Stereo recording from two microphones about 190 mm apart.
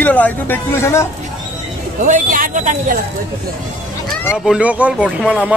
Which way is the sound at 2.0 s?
45° right (ahead or behind).